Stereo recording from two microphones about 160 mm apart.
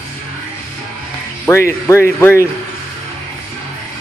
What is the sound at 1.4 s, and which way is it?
A man's voice, 15° left (ahead or behind).